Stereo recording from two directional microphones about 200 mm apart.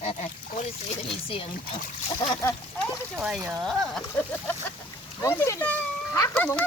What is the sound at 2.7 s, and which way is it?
Speech, centre (ahead or behind).